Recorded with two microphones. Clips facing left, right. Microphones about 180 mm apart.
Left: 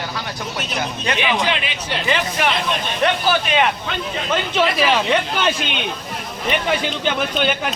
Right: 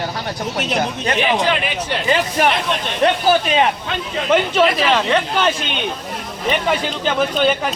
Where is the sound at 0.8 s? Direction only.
40° right (ahead or behind).